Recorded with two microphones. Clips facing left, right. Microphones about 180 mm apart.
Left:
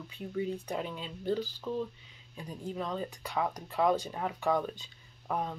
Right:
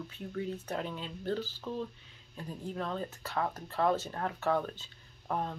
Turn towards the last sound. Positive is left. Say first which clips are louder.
# left 1 dB
turn(degrees=5)  # may be behind; listen again after turning